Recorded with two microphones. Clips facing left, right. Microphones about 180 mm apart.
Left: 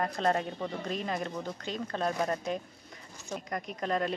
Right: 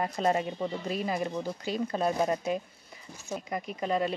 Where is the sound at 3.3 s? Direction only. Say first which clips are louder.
Right 2 dB; 5° right (ahead or behind).